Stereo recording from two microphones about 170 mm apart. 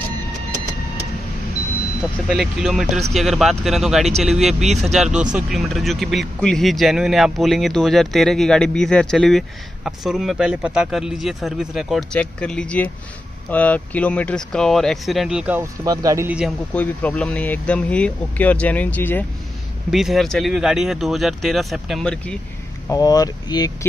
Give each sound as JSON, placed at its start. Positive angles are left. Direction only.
{"t": 2.2, "sound": "speech", "side_deg": 0}
{"t": 16.3, "sound": "speech", "side_deg": -5}
{"t": 16.7, "sound": "speech", "side_deg": 10}
{"t": 19.9, "sound": "speech", "side_deg": 0}
{"t": 22.8, "sound": "speech", "side_deg": 20}